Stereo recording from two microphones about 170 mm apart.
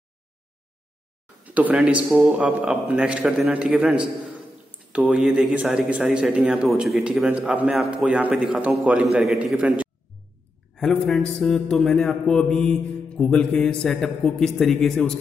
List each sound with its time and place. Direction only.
1.4 s a man's voice: 10° right (ahead or behind)